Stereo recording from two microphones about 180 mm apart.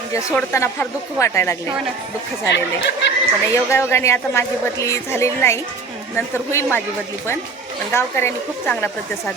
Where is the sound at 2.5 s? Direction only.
75° left (ahead or behind).